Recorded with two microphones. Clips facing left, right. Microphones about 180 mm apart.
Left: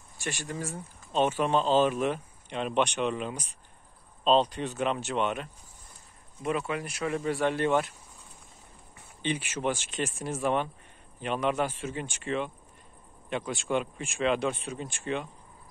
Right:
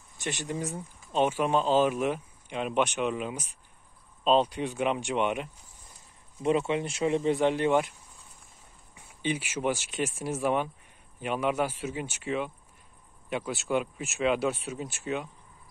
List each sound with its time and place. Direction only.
0.2 s speech: 20° right (ahead or behind)
6.4 s speech: 25° right (ahead or behind)
8.9 s speech: 10° right (ahead or behind)